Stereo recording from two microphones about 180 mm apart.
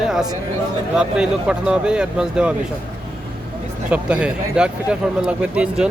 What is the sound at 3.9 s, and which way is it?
Speech, 5° right (ahead or behind).